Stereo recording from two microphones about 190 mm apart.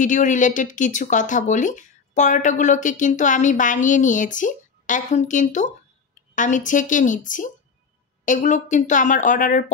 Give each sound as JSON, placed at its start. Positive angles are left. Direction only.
{"t": 0.0, "sound": "a woman's voice", "side_deg": 40}